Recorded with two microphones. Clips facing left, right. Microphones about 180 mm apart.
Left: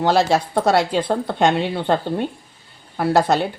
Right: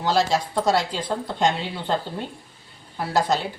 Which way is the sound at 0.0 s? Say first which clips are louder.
Left 5 dB; 60° left (ahead or behind).